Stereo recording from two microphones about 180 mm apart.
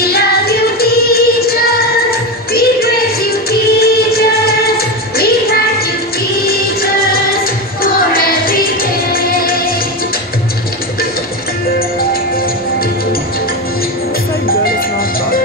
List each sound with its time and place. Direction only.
0.0 s music: 60° left (ahead or behind)